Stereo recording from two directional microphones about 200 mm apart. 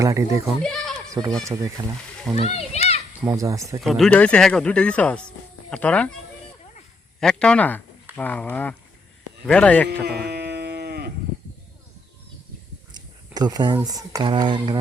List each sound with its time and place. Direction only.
0.0 s speech: 15° right (ahead or behind)
0.6 s a sound: centre (ahead or behind)
1.2 s speech: 20° right (ahead or behind)
2.4 s children playing: 30° left (ahead or behind)
3.2 s speech: 15° right (ahead or behind)
3.8 s speech: centre (ahead or behind)
7.2 s speech: 5° left (ahead or behind)
9.9 s a sound: 55° right (ahead or behind)
12.9 s a sound: 20° right (ahead or behind)
13.7 s speech: 15° right (ahead or behind)